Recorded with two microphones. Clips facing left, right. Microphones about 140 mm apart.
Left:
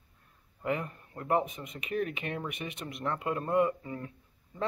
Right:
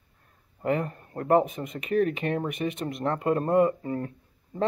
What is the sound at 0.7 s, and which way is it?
Speech, 40° right (ahead or behind).